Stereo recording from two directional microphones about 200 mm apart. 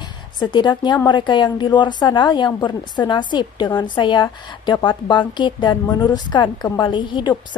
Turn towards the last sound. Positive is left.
turn(degrees=25)  # may be behind; listen again after turning